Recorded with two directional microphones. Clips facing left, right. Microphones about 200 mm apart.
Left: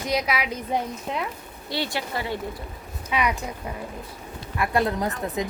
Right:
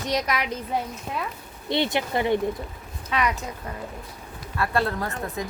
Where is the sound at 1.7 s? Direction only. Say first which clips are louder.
Right 5 dB; 20° right (ahead or behind).